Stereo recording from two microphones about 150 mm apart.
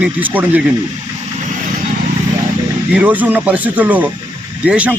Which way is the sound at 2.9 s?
10° right (ahead or behind).